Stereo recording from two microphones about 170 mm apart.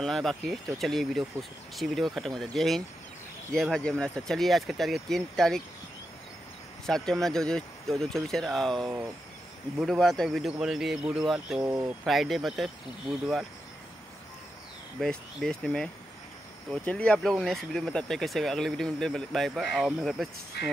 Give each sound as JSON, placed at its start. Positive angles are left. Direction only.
{"t": 0.0, "sound": "speech", "side_deg": 0}
{"t": 6.9, "sound": "speech", "side_deg": 5}
{"t": 15.0, "sound": "speech", "side_deg": 0}
{"t": 20.6, "sound": "speech", "side_deg": 75}